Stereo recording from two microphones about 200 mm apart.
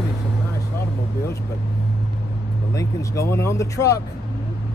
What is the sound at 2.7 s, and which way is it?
Speech, 15° left (ahead or behind).